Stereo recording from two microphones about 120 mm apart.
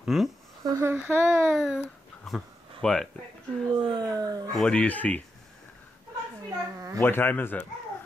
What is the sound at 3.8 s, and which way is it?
Speech, 45° right (ahead or behind).